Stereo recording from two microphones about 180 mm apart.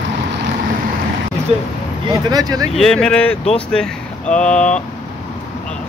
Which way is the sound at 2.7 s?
5° left (ahead or behind).